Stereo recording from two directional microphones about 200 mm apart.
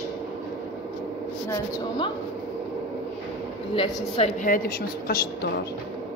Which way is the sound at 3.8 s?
30° left (ahead or behind).